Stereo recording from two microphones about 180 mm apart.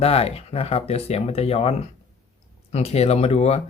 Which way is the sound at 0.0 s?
35° left (ahead or behind).